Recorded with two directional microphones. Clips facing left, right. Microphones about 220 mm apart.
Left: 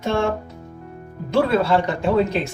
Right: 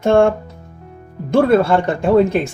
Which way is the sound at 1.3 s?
50° right (ahead or behind).